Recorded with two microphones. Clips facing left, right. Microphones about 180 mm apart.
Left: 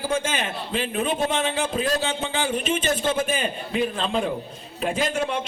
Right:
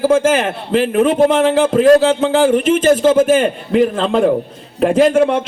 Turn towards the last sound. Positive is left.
turn(degrees=-75)  # may be behind; listen again after turning